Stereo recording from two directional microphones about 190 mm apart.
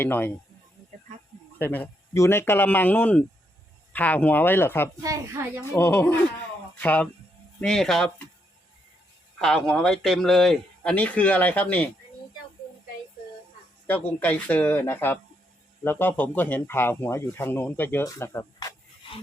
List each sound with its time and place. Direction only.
0.0 s speech: 10° left (ahead or behind)
1.5 s speech: 10° left (ahead or behind)
5.0 s a woman's voice: 15° right (ahead or behind)
5.7 s speech: 10° left (ahead or behind)
9.4 s speech: centre (ahead or behind)
13.8 s speech: 10° left (ahead or behind)